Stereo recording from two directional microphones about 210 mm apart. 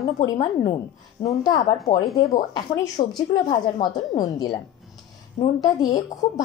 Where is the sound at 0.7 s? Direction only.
20° left (ahead or behind).